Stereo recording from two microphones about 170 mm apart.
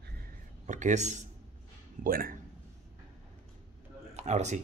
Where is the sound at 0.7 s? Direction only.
45° right (ahead or behind).